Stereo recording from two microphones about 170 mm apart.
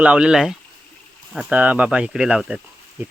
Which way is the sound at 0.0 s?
5° right (ahead or behind).